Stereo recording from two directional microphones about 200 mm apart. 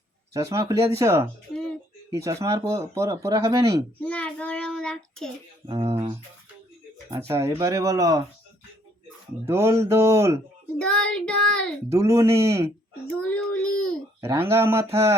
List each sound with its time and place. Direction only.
0.3 s speech: 15° right (ahead or behind)
4.0 s child singing: 5° left (ahead or behind)
5.6 s speech: 20° right (ahead or behind)
7.3 s speech: 15° right (ahead or behind)
9.5 s speech: 15° right (ahead or behind)
10.8 s child singing: 5° left (ahead or behind)
11.9 s speech: 15° right (ahead or behind)
13.3 s child singing: 5° left (ahead or behind)
14.2 s speech: 10° right (ahead or behind)